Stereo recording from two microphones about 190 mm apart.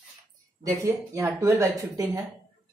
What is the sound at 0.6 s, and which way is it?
Speech, 15° right (ahead or behind).